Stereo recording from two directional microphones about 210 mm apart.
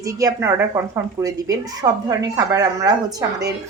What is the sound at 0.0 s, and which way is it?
A woman's voice, 15° right (ahead or behind).